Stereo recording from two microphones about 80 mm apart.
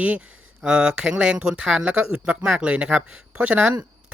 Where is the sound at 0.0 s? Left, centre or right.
Centre.